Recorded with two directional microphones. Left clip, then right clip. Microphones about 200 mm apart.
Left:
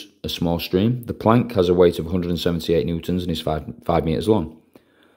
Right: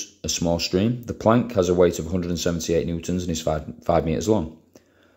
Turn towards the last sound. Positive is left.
turn(degrees=25)  # may be behind; listen again after turning